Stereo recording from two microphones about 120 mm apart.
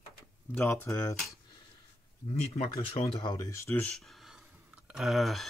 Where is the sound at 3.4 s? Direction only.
25° left (ahead or behind).